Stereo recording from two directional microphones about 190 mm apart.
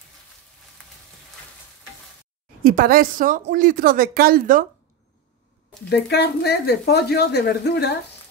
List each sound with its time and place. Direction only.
2.6 s a woman's voice: 50° right (ahead or behind)
5.9 s speech: 60° left (ahead or behind)